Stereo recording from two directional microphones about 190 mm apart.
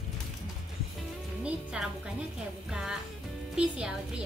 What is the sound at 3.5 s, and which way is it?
Speech, 5° right (ahead or behind).